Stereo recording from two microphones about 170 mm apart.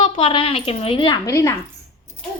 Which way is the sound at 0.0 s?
30° left (ahead or behind).